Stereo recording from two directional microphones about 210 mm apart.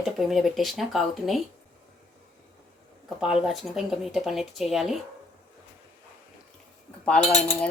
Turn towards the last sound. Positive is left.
turn(degrees=35)  # may be behind; listen again after turning